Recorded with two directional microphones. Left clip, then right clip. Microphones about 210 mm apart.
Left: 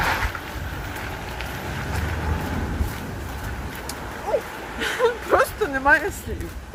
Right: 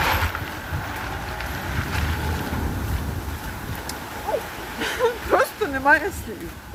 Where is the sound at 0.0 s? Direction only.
35° right (ahead or behind).